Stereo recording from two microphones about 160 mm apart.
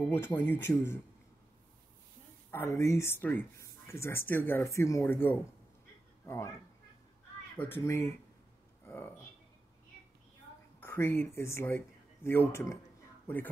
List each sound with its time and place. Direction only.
0.0 s speech: 10° left (ahead or behind)
2.5 s speech: 15° left (ahead or behind)
7.5 s speech: 15° left (ahead or behind)
10.8 s speech: 15° left (ahead or behind)